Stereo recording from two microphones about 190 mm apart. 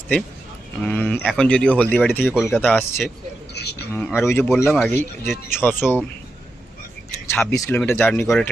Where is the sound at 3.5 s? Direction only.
60° left (ahead or behind).